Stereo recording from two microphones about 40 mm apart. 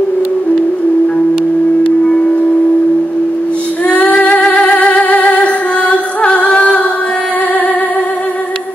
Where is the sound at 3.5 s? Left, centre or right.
Left.